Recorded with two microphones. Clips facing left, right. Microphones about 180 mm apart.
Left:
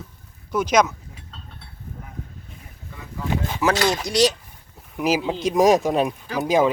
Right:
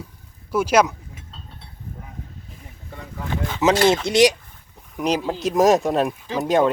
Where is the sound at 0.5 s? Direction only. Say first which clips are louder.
Right 1 dB; 5° right (ahead or behind).